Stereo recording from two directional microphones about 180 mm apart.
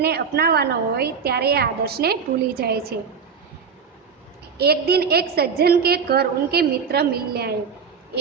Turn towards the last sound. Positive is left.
turn(degrees=-60)  # may be behind; listen again after turning